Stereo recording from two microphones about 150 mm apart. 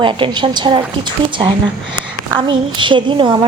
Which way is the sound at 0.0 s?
35° right (ahead or behind).